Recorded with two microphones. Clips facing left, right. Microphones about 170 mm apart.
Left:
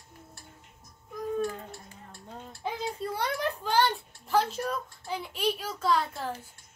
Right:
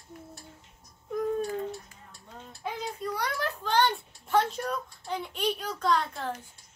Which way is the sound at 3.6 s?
5° left (ahead or behind).